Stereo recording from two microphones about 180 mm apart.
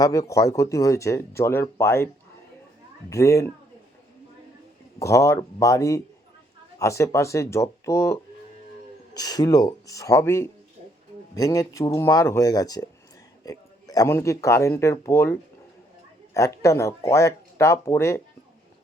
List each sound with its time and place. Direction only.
0.0 s speech: 20° left (ahead or behind)
3.1 s speech: 15° left (ahead or behind)
4.9 s speech: 15° left (ahead or behind)